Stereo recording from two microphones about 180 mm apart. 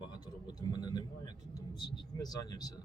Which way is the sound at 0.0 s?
25° left (ahead or behind).